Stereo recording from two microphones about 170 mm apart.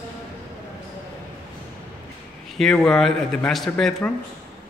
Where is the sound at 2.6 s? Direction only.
5° left (ahead or behind).